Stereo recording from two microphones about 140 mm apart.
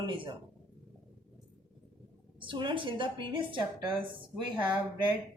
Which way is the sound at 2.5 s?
35° right (ahead or behind).